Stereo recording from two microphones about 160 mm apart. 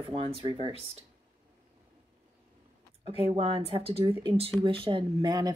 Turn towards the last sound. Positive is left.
turn(degrees=-25)  # may be behind; listen again after turning